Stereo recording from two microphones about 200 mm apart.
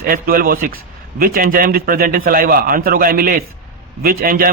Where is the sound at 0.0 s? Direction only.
45° right (ahead or behind).